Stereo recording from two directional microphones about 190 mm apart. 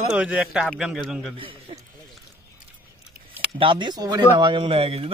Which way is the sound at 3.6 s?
25° right (ahead or behind).